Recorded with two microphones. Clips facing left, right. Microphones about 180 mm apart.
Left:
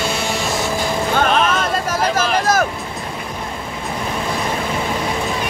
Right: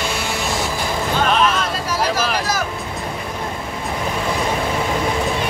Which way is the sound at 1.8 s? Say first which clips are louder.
Even; 50° left (ahead or behind).